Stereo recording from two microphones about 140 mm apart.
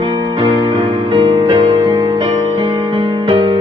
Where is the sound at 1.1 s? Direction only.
35° right (ahead or behind).